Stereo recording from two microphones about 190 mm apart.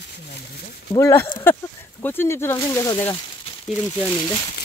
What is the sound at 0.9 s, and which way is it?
Speech, 15° left (ahead or behind).